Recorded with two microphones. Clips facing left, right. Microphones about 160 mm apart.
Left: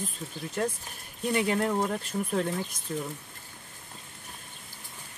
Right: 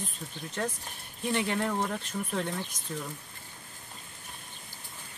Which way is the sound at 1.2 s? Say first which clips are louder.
Left 3 dB; 5° left (ahead or behind).